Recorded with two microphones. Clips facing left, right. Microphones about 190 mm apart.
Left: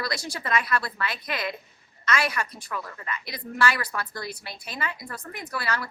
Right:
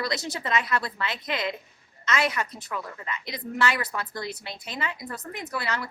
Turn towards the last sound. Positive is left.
turn(degrees=-20)  # may be behind; listen again after turning